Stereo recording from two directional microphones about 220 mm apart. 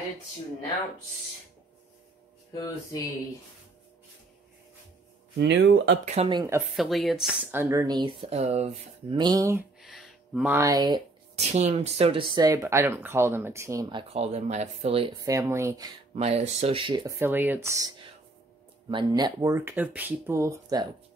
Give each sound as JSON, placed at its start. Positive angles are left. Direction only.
{"t": 2.5, "sound": "speech", "side_deg": 15}
{"t": 5.4, "sound": "speech", "side_deg": -50}
{"t": 6.0, "sound": "speech", "side_deg": -25}
{"t": 6.6, "sound": "a woman's voice", "side_deg": 0}
{"t": 7.7, "sound": "speech", "side_deg": -20}
{"t": 8.2, "sound": "speech", "side_deg": -30}
{"t": 9.2, "sound": "speech", "side_deg": -15}
{"t": 9.8, "sound": "a sound", "side_deg": 0}
{"t": 11.3, "sound": "speech", "side_deg": -30}
{"t": 16.2, "sound": "speech", "side_deg": -30}